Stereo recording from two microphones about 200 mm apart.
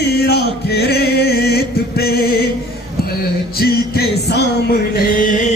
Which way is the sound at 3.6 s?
50° left (ahead or behind).